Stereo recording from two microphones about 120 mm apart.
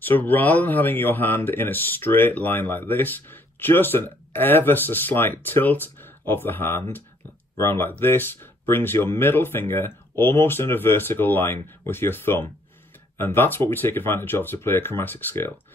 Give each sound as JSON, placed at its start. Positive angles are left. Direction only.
{"t": 0.0, "sound": "speech", "side_deg": 15}